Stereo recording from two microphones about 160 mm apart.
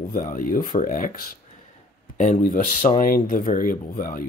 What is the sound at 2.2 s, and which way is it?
Speech, 55° left (ahead or behind).